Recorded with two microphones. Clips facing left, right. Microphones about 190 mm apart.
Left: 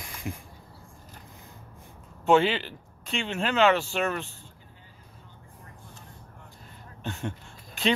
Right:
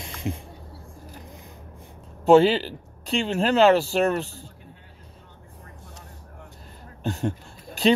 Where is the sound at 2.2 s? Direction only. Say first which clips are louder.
Right 6 dB; 35° right (ahead or behind).